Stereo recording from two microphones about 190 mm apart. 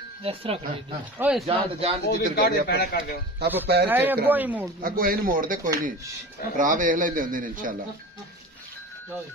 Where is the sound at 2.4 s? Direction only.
55° left (ahead or behind).